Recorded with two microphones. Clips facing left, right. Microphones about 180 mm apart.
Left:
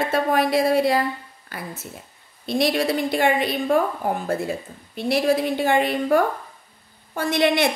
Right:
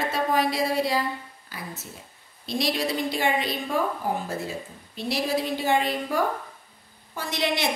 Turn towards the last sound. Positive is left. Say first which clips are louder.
# left 8 dB
turn(degrees=55)  # may be behind; listen again after turning